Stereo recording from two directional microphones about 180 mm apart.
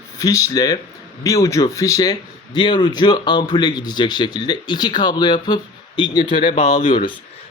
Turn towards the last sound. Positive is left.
turn(degrees=30)  # may be behind; listen again after turning